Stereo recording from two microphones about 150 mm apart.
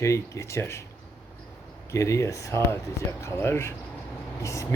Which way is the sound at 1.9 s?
20° left (ahead or behind).